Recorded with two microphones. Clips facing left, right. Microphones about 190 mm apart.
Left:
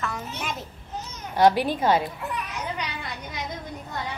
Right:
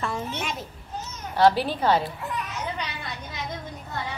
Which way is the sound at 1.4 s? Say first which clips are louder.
Left 1 dB; 15° left (ahead or behind).